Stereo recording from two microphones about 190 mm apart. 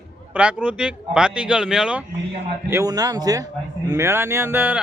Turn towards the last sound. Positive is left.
turn(degrees=-10)  # may be behind; listen again after turning